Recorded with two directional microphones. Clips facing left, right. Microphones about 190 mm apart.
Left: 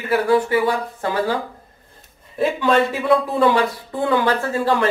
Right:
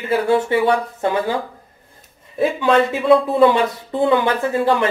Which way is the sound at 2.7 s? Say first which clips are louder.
Right 4 dB; 20° right (ahead or behind).